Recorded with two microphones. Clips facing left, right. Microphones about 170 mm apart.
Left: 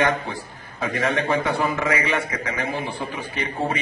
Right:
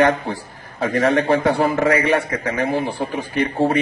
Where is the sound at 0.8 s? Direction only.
40° right (ahead or behind).